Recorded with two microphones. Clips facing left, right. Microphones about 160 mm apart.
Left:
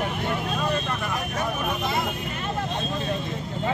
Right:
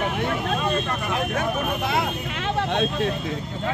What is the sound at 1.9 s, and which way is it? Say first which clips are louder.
Speech: right 2 dB; 75° right (ahead or behind).